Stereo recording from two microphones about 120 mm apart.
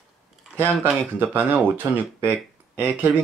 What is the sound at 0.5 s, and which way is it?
Speech, 15° right (ahead or behind).